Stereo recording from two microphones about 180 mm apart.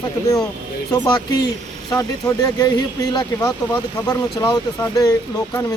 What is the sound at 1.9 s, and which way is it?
A man's voice, 20° left (ahead or behind).